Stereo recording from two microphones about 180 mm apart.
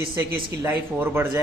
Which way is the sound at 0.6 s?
10° right (ahead or behind).